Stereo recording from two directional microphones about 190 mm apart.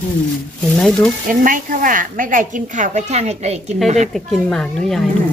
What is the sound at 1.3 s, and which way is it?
A woman's voice, 45° right (ahead or behind).